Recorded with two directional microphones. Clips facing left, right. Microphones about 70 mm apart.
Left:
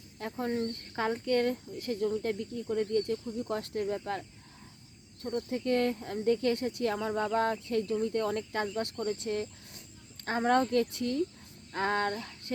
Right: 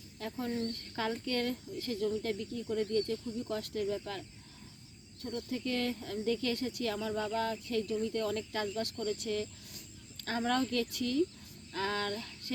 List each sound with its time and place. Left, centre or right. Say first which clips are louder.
0.2 s speech: left 4 dB; left
2.4 s speech: left 3 dB; centre
3.5 s speech: left 2 dB; left
5.2 s speech: left 5 dB; left
11.7 s a sound: left 5 dB; left